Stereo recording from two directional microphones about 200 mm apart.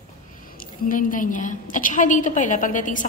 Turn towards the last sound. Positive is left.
turn(degrees=40)  # may be behind; listen again after turning